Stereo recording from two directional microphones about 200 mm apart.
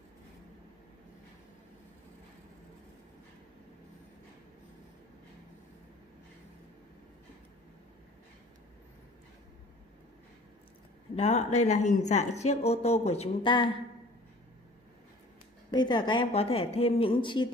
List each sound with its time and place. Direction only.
11.1 s speech: 30° left (ahead or behind)
15.7 s speech: 20° left (ahead or behind)